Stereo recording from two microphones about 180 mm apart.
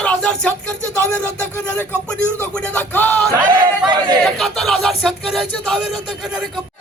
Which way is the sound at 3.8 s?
25° right (ahead or behind).